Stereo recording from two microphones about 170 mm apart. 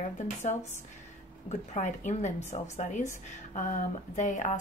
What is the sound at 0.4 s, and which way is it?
A woman's voice, 40° left (ahead or behind).